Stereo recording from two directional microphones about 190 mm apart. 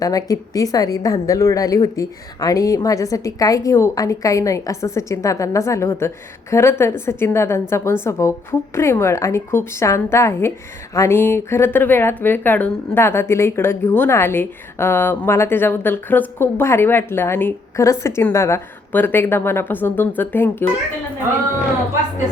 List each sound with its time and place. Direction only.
0.0 s a woman's voice: 20° left (ahead or behind)